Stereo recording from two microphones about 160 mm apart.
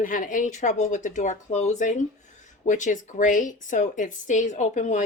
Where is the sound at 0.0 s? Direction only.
55° left (ahead or behind).